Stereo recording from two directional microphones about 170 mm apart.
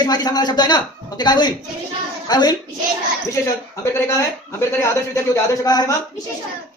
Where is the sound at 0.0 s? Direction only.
25° left (ahead or behind).